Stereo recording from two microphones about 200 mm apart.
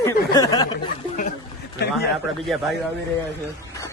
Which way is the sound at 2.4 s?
Centre (ahead or behind).